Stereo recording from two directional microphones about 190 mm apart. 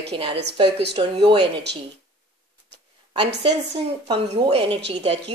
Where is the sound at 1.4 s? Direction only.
60° right (ahead or behind).